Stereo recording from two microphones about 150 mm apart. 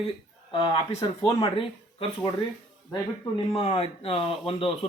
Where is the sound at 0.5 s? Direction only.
30° left (ahead or behind).